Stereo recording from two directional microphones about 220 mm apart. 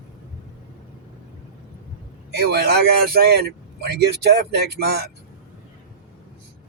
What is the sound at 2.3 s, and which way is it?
Speech, 45° right (ahead or behind).